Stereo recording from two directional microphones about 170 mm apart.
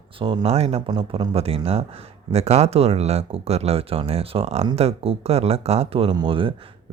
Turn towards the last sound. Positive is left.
turn(degrees=-30)  # may be behind; listen again after turning